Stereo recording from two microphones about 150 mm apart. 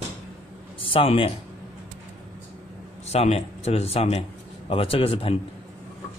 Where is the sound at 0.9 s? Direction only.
35° left (ahead or behind).